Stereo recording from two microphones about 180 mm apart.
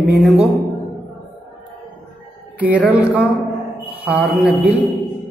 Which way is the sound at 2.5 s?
10° right (ahead or behind).